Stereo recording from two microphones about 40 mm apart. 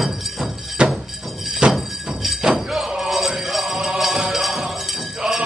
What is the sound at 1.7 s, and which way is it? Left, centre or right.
Music, centre.